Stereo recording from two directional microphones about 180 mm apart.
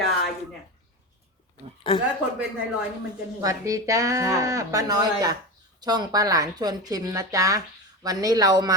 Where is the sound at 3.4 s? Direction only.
20° right (ahead or behind).